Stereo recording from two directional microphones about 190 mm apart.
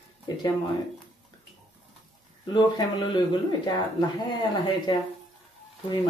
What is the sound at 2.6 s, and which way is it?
Speech, 25° left (ahead or behind).